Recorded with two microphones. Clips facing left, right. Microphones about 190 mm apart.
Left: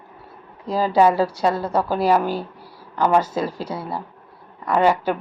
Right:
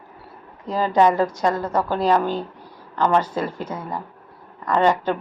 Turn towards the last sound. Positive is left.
turn(degrees=10)  # may be behind; listen again after turning